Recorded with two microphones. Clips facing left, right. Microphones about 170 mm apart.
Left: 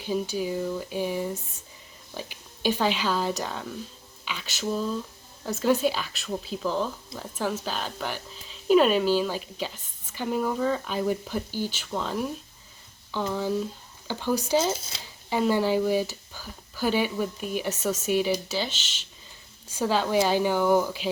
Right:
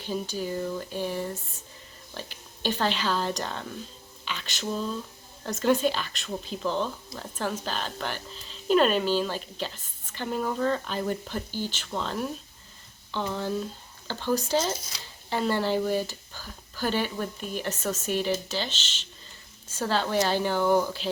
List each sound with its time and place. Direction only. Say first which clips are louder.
0.0 s speech: left 3 dB; 10° left (ahead or behind)
13.3 s speech: left 3 dB; 5° left (ahead or behind)
14.8 s speech: left 1 dB; 30° left (ahead or behind)
15.3 s speech: left 3 dB; 10° left (ahead or behind)